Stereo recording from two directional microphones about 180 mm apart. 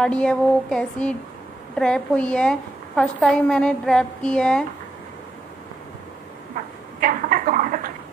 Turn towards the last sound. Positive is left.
turn(degrees=-50)  # may be behind; listen again after turning